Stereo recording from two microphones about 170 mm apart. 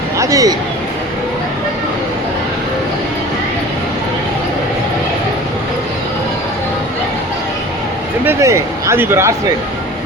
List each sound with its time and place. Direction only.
0.2 s speech: 20° right (ahead or behind)
8.2 s speech: 15° right (ahead or behind)